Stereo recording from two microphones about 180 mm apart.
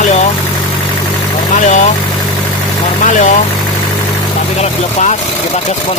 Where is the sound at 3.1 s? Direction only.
45° left (ahead or behind).